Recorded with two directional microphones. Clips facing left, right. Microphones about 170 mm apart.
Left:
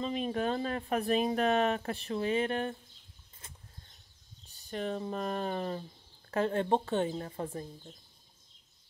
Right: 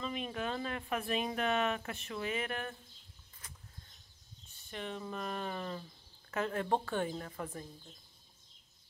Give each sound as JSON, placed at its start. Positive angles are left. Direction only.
{"t": 0.0, "sound": "speech", "side_deg": 35}
{"t": 3.4, "sound": "bird flight", "side_deg": 25}
{"t": 4.5, "sound": "a woman's voice", "side_deg": 40}